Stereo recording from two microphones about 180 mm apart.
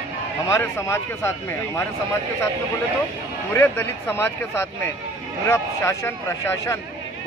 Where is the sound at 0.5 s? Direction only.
15° left (ahead or behind).